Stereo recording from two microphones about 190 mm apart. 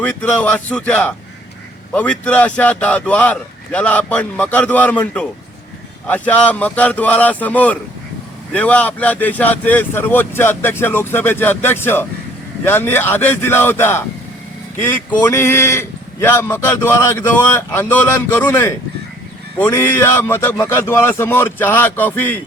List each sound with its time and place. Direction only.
0.0 s a man's voice: 5° left (ahead or behind)
15.2 s a man's voice: 15° left (ahead or behind)